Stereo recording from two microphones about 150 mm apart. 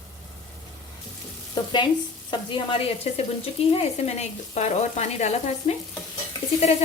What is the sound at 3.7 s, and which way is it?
Sizzle, 45° left (ahead or behind).